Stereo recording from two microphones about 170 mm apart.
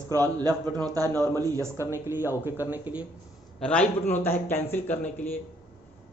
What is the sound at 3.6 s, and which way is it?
A man's voice, 5° left (ahead or behind).